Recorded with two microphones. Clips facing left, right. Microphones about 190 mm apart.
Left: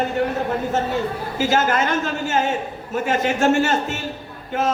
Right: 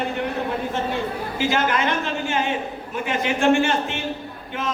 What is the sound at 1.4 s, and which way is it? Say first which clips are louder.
A man's voice: left 3 dB; 45° left (ahead or behind).